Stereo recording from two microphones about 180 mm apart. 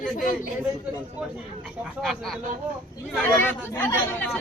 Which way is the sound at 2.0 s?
Centre (ahead or behind).